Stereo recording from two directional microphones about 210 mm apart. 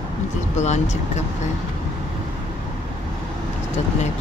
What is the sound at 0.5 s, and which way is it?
Speech, 35° left (ahead or behind).